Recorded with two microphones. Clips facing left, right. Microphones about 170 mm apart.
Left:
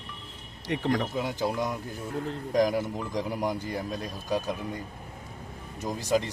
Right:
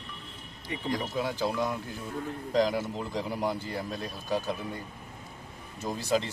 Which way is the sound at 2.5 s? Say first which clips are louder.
Left 2 dB; 15° left (ahead or behind).